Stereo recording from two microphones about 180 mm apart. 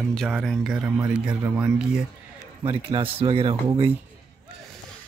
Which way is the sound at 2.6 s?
25° right (ahead or behind).